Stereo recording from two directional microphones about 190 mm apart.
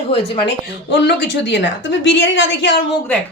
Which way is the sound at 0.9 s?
65° left (ahead or behind).